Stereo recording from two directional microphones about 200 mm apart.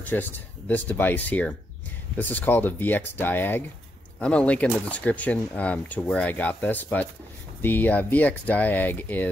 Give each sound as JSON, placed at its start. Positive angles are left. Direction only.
{"t": 0.1, "sound": "speech", "side_deg": 10}